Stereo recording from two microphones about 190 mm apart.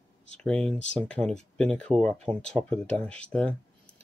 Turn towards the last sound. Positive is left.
turn(degrees=5)  # may be behind; listen again after turning